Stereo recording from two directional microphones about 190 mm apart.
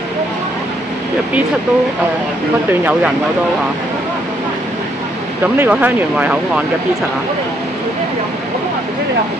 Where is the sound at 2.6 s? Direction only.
10° right (ahead or behind).